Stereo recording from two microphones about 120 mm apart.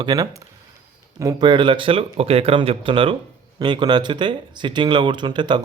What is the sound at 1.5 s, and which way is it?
A man's voice, 45° right (ahead or behind).